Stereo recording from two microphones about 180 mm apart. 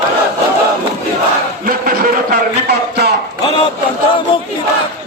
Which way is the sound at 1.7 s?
55° right (ahead or behind).